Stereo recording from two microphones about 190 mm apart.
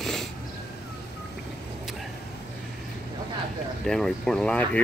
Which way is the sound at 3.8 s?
Centre (ahead or behind).